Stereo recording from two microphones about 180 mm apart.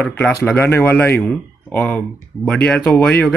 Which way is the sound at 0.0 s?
5° left (ahead or behind).